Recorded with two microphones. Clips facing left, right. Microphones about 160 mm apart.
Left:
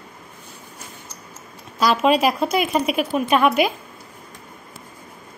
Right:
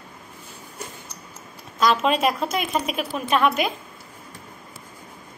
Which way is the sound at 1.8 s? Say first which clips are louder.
Left 3 dB; 5° left (ahead or behind).